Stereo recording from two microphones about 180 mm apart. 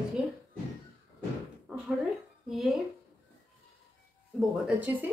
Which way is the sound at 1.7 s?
5° right (ahead or behind).